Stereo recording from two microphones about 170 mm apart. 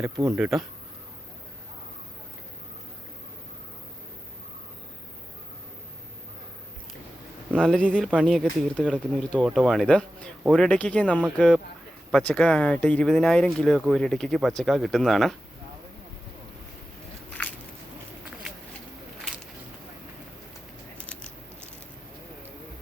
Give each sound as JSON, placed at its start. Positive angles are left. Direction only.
{"t": 0.0, "sound": "speech", "side_deg": -20}
{"t": 0.3, "sound": "speech", "side_deg": -5}
{"t": 7.6, "sound": "speech", "side_deg": 5}